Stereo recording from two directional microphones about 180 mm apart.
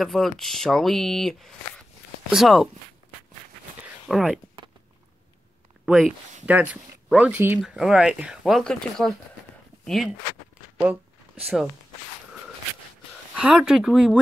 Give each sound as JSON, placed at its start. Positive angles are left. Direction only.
{"t": 0.0, "sound": "speech", "side_deg": 0}
{"t": 4.1, "sound": "speech", "side_deg": -5}
{"t": 5.9, "sound": "speech", "side_deg": 0}
{"t": 11.4, "sound": "speech", "side_deg": 0}
{"t": 13.4, "sound": "speech", "side_deg": -5}